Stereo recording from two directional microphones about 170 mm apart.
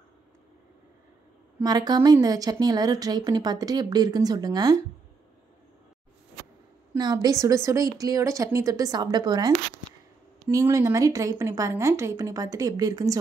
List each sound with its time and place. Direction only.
1.6 s speech: 20° right (ahead or behind)
7.0 s speech: 25° right (ahead or behind)
10.5 s speech: 15° right (ahead or behind)